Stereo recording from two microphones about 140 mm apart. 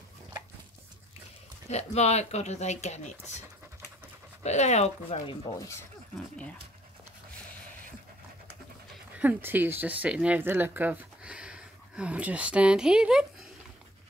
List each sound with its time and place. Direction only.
1.7 s speech: 50° left (ahead or behind)
4.4 s speech: 55° left (ahead or behind)
6.1 s speech: 10° left (ahead or behind)
9.2 s speech: 10° right (ahead or behind)